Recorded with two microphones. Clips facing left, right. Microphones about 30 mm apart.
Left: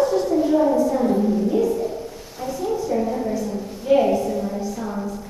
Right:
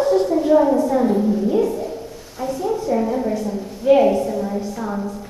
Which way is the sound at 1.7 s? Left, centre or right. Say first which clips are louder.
Left 1 dB; centre.